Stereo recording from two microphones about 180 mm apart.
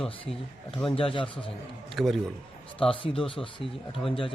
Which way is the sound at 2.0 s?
Centre (ahead or behind).